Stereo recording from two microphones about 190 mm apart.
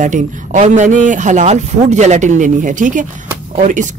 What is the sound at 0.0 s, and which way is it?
A man's voice, 40° right (ahead or behind).